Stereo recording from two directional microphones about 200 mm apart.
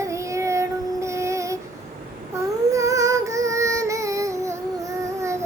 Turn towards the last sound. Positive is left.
turn(degrees=-15)  # may be behind; listen again after turning